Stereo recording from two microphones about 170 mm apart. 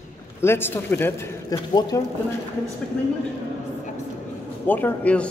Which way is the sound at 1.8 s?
25° left (ahead or behind).